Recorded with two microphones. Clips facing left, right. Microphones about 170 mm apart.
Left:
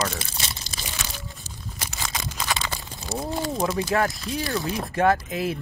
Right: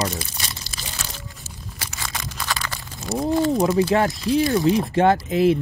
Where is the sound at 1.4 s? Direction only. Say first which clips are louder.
Even; 20° left (ahead or behind).